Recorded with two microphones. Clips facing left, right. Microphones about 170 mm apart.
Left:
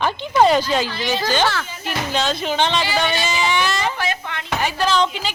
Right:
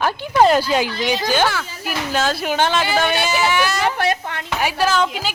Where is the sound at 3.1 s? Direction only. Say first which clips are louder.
Right 3 dB; 60° right (ahead or behind).